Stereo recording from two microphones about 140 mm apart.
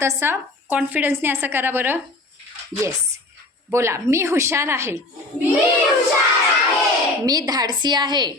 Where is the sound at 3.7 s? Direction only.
20° right (ahead or behind).